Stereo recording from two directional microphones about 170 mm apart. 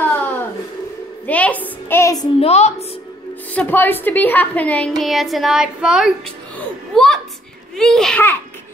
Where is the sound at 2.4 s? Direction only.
40° left (ahead or behind).